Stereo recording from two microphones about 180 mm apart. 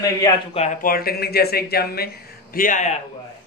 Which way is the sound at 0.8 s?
55° left (ahead or behind).